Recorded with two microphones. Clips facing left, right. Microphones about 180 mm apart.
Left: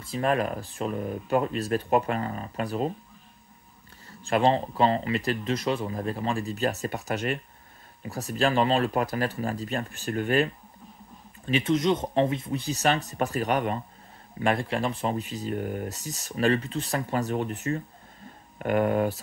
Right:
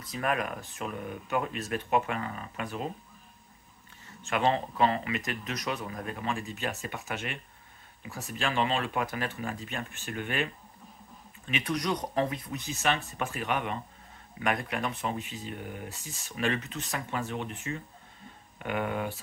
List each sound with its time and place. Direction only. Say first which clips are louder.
0.0 s speech: left 5 dB; 30° left (ahead or behind)
4.2 s speech: left 5 dB; 35° left (ahead or behind)